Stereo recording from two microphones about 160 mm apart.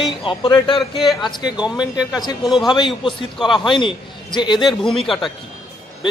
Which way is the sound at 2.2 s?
25° left (ahead or behind).